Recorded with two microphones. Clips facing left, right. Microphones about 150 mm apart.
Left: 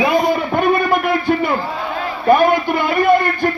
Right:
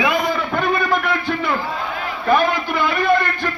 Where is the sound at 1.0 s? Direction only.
50° left (ahead or behind).